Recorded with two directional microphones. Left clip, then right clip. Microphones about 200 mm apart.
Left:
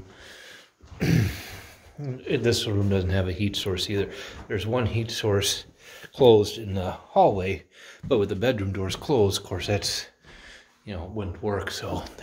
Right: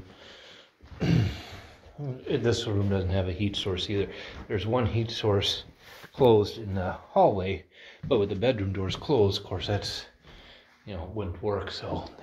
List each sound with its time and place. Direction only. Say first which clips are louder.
0.9 s a sound: left 3 dB; 30° left (ahead or behind)
1.4 s speech: left 3 dB; 30° left (ahead or behind)
10.9 s speech: left 1 dB; 30° left (ahead or behind)
11.8 s speech: left 2 dB; 45° left (ahead or behind)